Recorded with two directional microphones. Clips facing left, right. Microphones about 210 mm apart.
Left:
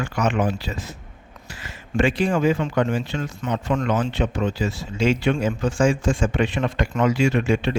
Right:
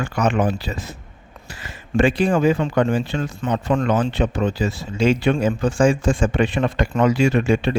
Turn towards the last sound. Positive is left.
turn(degrees=-35)  # may be behind; listen again after turning